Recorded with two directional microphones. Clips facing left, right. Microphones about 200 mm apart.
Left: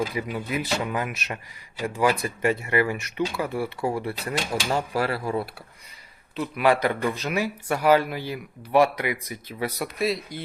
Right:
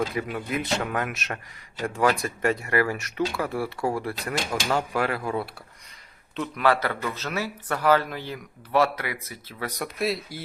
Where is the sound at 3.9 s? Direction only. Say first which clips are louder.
Left 1 dB; 25° left (ahead or behind).